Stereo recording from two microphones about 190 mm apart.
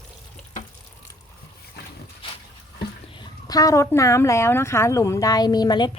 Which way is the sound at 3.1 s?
20° left (ahead or behind).